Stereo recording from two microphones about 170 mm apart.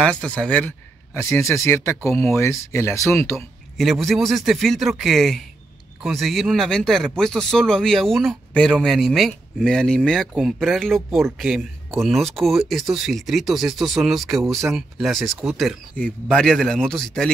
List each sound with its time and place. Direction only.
0.0 s speech: 5° left (ahead or behind)
3.7 s a man's voice: centre (ahead or behind)
14.4 s speech: 15° right (ahead or behind)
14.7 s a man's voice: centre (ahead or behind)